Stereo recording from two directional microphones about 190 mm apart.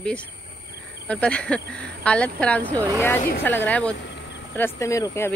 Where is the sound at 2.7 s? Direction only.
15° right (ahead or behind).